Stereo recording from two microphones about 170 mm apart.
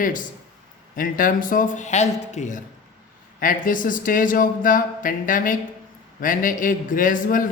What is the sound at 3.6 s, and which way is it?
Speech, 50° left (ahead or behind).